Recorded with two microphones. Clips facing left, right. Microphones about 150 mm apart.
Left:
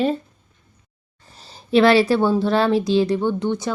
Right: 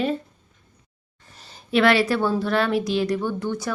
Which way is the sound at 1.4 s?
30° left (ahead or behind).